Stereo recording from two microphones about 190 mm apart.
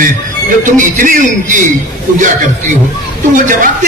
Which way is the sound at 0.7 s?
45° right (ahead or behind).